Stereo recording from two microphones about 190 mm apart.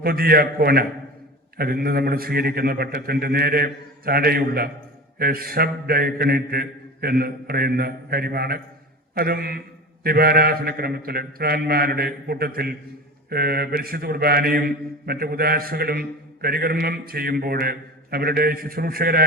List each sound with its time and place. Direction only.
0.0 s a man's voice: 50° right (ahead or behind)